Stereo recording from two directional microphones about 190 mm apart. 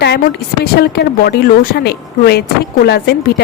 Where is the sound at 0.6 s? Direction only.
55° left (ahead or behind).